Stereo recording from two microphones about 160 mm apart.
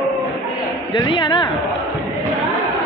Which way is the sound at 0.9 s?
30° left (ahead or behind).